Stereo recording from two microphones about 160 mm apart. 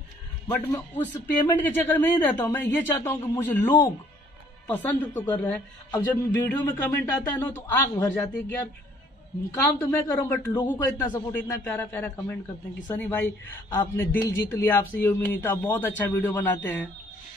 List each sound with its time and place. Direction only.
0.5 s a man's voice: 10° left (ahead or behind)